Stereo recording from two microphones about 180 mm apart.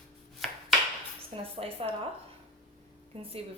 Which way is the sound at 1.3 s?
35° right (ahead or behind).